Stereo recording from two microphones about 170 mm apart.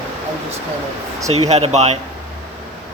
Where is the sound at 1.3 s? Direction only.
40° right (ahead or behind).